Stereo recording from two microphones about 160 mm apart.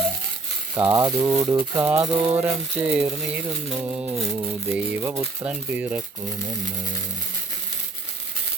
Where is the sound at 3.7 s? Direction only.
5° right (ahead or behind).